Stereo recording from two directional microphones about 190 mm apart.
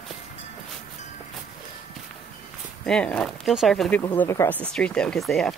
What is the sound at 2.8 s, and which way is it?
Speech, 5° left (ahead or behind).